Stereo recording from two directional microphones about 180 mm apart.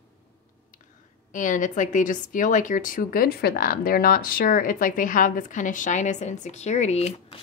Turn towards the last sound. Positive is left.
turn(degrees=35)  # may be behind; listen again after turning